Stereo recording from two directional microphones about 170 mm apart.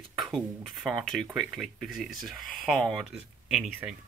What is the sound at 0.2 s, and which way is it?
Speech, centre (ahead or behind).